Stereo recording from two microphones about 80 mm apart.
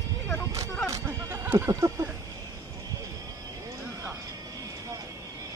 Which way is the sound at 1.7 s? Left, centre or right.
Right.